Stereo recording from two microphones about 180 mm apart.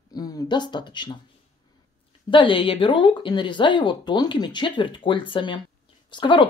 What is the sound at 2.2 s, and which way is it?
Speech, 30° left (ahead or behind).